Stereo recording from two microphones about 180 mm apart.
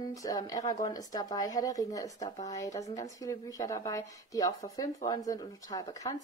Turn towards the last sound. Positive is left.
turn(degrees=20)  # may be behind; listen again after turning